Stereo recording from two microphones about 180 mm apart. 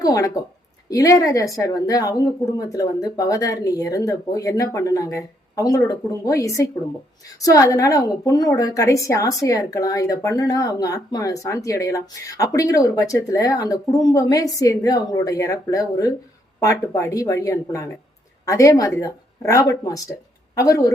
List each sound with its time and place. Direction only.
0.0 s a woman's voice: 20° left (ahead or behind)